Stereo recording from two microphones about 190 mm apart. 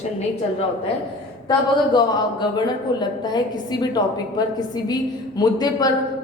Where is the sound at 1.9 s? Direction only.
25° left (ahead or behind).